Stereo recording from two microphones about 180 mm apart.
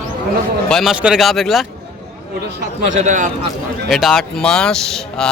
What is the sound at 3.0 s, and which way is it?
Speech, 45° right (ahead or behind).